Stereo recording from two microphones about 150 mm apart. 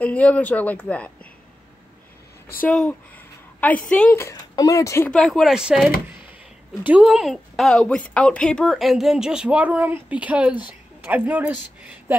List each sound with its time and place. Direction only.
0.0 s speech: 10° left (ahead or behind)
2.6 s speech: 10° left (ahead or behind)
4.2 s speech: 25° left (ahead or behind)
5.1 s a woman's voice: centre (ahead or behind)
6.9 s a woman's voice: 5° right (ahead or behind)